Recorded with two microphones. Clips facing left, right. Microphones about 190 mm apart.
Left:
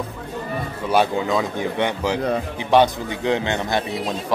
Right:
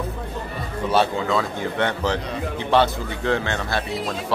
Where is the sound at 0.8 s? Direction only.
15° left (ahead or behind).